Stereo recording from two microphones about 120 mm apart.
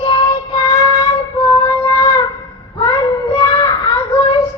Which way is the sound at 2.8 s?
55° left (ahead or behind).